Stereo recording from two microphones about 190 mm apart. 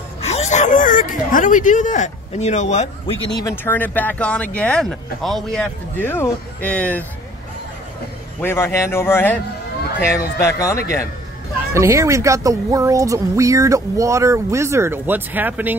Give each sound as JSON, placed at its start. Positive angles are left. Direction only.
{"t": 0.2, "sound": "speech", "side_deg": 35}
{"t": 3.4, "sound": "speech", "side_deg": 10}
{"t": 8.4, "sound": "speech", "side_deg": 10}
{"t": 11.7, "sound": "speech", "side_deg": -15}